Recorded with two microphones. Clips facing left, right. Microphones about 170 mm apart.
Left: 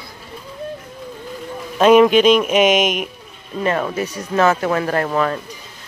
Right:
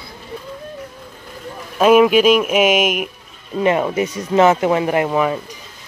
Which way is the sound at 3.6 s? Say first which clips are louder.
Right 3 dB; 20° right (ahead or behind).